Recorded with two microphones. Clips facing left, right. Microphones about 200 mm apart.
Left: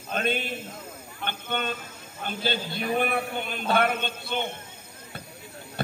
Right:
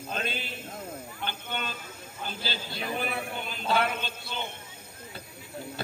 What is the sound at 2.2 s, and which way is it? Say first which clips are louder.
A man's voice: left 7 dB; 55° left (ahead or behind).